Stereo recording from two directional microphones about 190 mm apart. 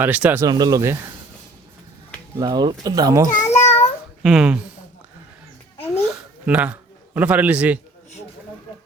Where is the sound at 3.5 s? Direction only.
35° left (ahead or behind).